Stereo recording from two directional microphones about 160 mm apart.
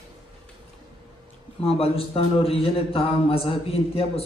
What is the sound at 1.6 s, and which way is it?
A man's voice, 35° left (ahead or behind).